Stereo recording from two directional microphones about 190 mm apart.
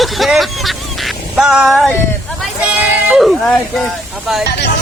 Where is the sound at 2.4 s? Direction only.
5° right (ahead or behind).